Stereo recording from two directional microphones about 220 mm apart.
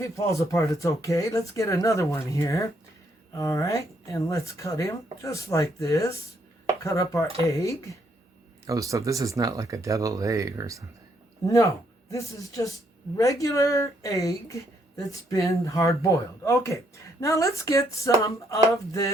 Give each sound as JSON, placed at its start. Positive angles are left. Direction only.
{"t": 0.0, "sound": "speech", "side_deg": 15}
{"t": 8.6, "sound": "speech", "side_deg": -15}
{"t": 11.4, "sound": "speech", "side_deg": 15}